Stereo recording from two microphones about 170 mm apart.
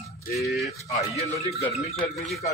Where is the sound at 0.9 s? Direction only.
40° left (ahead or behind).